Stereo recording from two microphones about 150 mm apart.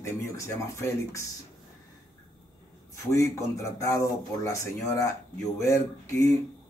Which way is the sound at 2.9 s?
20° left (ahead or behind).